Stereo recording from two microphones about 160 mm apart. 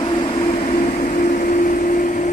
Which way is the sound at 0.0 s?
35° left (ahead or behind).